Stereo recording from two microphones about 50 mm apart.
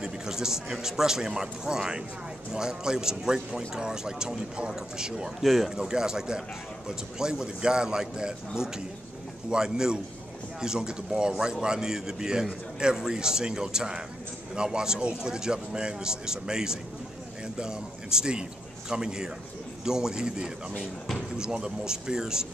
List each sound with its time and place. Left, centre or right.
0.0 s a man's voice: centre
5.4 s speech: centre
5.8 s a man's voice: centre